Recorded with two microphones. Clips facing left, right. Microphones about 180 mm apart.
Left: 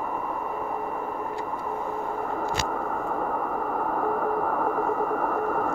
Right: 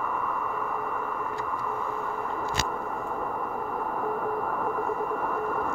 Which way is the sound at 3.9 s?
50° left (ahead or behind).